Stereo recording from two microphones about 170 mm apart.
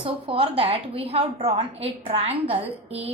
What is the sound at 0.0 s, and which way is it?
A woman's voice, 30° right (ahead or behind).